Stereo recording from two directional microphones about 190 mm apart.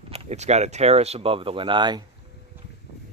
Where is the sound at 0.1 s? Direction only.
35° right (ahead or behind).